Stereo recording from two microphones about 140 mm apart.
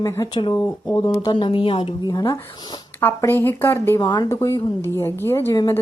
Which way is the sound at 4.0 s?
30° left (ahead or behind).